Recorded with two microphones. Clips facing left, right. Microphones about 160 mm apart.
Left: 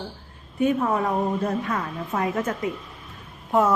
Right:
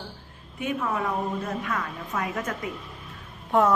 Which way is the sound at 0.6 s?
40° left (ahead or behind).